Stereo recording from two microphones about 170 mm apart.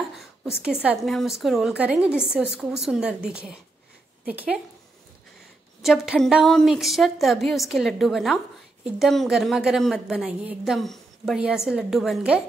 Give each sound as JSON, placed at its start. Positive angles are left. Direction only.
{"t": 0.1, "sound": "a sound", "side_deg": -5}
{"t": 0.8, "sound": "a woman's voice", "side_deg": 0}
{"t": 5.8, "sound": "a woman's voice", "side_deg": 0}